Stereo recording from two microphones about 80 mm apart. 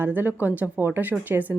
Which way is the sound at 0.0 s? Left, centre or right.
Right.